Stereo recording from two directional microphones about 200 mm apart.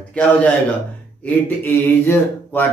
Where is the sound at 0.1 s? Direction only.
5° left (ahead or behind).